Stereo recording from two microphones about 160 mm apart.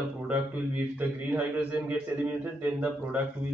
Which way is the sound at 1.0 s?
10° right (ahead or behind).